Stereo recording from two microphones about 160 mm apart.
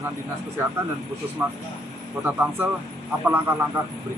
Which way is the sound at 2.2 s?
10° right (ahead or behind).